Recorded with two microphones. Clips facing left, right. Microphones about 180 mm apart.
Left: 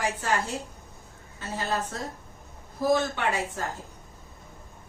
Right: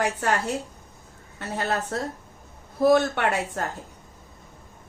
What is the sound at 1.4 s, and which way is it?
Speech, 65° right (ahead or behind).